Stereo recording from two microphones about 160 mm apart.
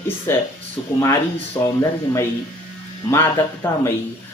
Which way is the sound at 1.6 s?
15° left (ahead or behind).